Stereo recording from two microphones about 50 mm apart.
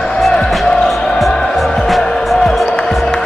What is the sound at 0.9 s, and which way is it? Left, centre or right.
Music, centre.